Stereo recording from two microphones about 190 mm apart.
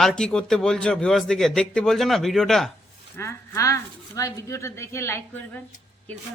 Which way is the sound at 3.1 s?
15° left (ahead or behind).